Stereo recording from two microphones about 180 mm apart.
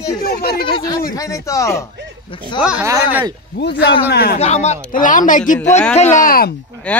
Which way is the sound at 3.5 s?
70° left (ahead or behind).